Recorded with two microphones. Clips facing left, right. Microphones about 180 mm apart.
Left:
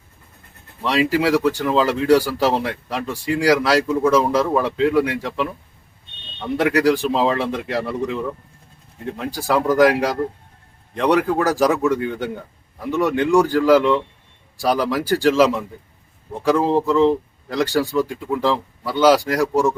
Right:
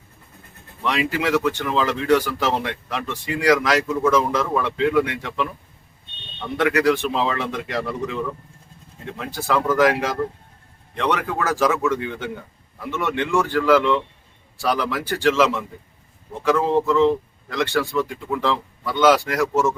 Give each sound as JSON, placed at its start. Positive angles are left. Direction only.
{"t": 0.8, "sound": "speech", "side_deg": 35}
{"t": 6.6, "sound": "speech", "side_deg": 35}